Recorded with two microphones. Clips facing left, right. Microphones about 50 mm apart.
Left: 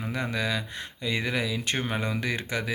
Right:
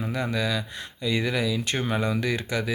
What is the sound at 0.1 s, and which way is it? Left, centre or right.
Speech, left.